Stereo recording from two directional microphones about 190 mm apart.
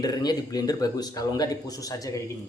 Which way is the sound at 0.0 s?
20° left (ahead or behind).